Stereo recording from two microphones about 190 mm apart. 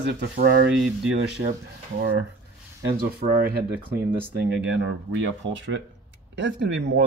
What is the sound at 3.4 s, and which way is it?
Speech, 55° right (ahead or behind).